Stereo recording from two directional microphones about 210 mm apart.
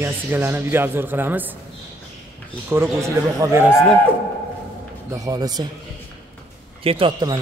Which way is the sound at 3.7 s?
10° left (ahead or behind).